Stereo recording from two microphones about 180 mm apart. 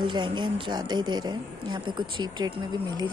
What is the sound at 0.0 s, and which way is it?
Speech, 25° right (ahead or behind).